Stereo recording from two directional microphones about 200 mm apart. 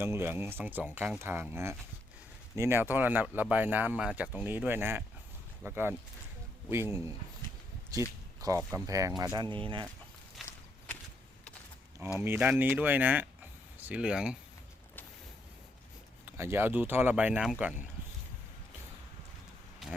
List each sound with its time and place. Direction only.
0.0 s speech: 10° right (ahead or behind)
10.4 s a sound: centre (ahead or behind)
12.2 s speech: 10° right (ahead or behind)
16.2 s speech: 10° right (ahead or behind)